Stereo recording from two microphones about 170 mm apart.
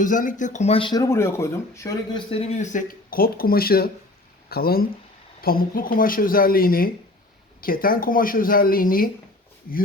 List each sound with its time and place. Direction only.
0.0 s speech: 50° left (ahead or behind); by 2.2 s 20° left (ahead or behind)
2.3 s speech: 40° left (ahead or behind); by 9.0 s 60° left (ahead or behind)